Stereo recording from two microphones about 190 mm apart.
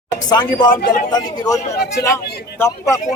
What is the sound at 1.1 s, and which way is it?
A man's voice, 20° left (ahead or behind).